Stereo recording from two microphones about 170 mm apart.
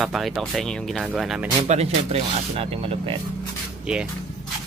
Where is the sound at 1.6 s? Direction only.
40° right (ahead or behind).